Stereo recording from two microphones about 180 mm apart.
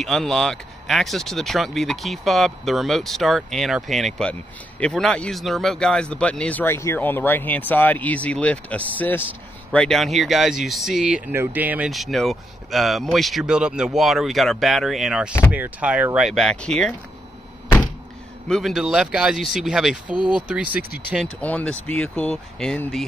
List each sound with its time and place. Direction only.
0.0 s speech: centre (ahead or behind)
18.5 s speech: centre (ahead or behind)
20.1 s speech: 25° left (ahead or behind)
20.3 s speech: 5° right (ahead or behind)
21.4 s speech: 10° left (ahead or behind)